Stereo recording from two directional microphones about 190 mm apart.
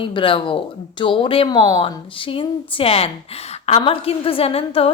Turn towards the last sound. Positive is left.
turn(degrees=30)  # may be behind; listen again after turning